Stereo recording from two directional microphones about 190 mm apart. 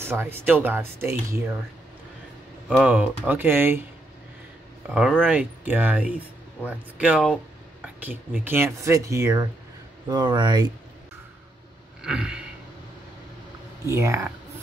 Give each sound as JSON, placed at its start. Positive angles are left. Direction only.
{"t": 0.0, "sound": "speech", "side_deg": -10}
{"t": 2.7, "sound": "speech", "side_deg": -5}
{"t": 4.9, "sound": "speech", "side_deg": -5}
{"t": 12.0, "sound": "a sound", "side_deg": -5}
{"t": 13.8, "sound": "speech", "side_deg": -15}